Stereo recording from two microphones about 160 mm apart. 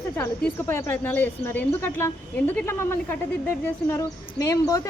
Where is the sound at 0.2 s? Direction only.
15° left (ahead or behind).